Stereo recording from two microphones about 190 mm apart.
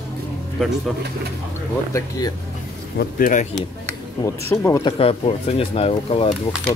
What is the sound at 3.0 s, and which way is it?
Speech, 45° left (ahead or behind).